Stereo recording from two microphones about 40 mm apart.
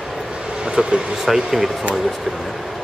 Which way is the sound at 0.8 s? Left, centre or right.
Centre.